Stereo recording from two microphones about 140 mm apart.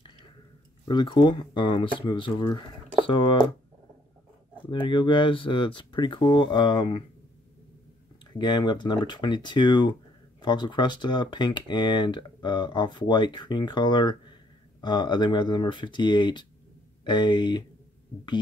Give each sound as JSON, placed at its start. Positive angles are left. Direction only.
{"t": 0.8, "sound": "speech", "side_deg": 35}
{"t": 4.6, "sound": "speech", "side_deg": 35}
{"t": 8.4, "sound": "speech", "side_deg": 30}